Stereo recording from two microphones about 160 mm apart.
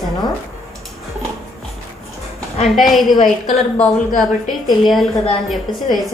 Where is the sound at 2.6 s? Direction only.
Centre (ahead or behind).